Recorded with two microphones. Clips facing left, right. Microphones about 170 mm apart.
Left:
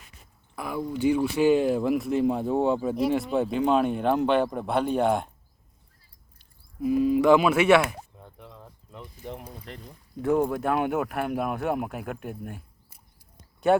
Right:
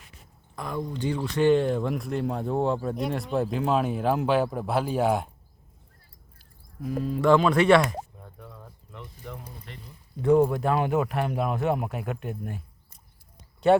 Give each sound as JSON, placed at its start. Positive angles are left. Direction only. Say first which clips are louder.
{"t": 0.5, "sound": "speech", "louder": "left 1 dB", "side_deg": 5}
{"t": 6.4, "sound": "speech", "louder": "left 7 dB", "side_deg": 5}
{"t": 8.4, "sound": "bird", "louder": "right 1 dB", "side_deg": 20}
{"t": 10.2, "sound": "speech", "louder": "right 3 dB", "side_deg": 0}